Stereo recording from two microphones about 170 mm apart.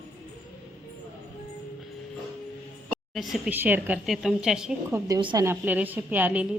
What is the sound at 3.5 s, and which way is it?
A woman's voice, 10° right (ahead or behind).